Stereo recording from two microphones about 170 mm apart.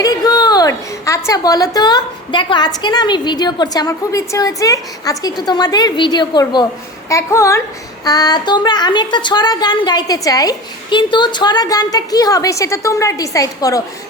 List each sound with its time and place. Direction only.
0.0 s a woman's voice: 20° left (ahead or behind)